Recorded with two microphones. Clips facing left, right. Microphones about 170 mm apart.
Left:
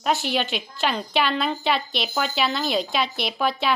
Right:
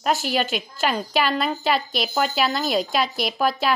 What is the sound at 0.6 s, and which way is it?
Speech, 5° right (ahead or behind).